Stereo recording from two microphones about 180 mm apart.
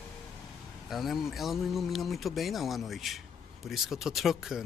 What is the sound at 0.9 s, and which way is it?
Speech, centre (ahead or behind).